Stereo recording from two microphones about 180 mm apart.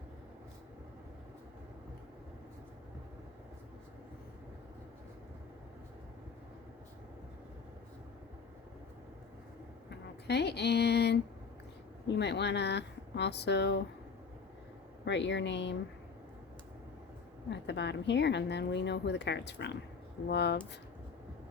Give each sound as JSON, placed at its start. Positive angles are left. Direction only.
{"t": 10.2, "sound": "speech", "side_deg": 70}
{"t": 15.0, "sound": "a woman's voice", "side_deg": 80}
{"t": 17.5, "sound": "a woman's voice", "side_deg": 70}